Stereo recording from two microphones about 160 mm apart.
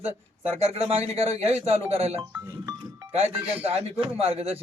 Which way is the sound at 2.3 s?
15° right (ahead or behind).